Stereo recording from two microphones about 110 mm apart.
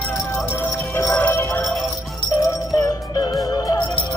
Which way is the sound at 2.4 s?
35° left (ahead or behind).